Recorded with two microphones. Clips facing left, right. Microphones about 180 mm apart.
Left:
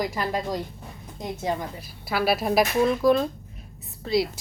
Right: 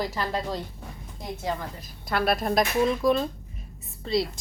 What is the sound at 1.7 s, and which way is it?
A woman's voice, 5° left (ahead or behind).